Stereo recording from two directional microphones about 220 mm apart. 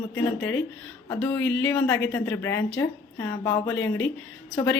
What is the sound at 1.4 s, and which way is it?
Speech, 55° left (ahead or behind).